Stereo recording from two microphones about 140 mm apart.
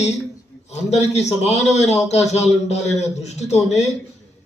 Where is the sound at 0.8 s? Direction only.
50° left (ahead or behind).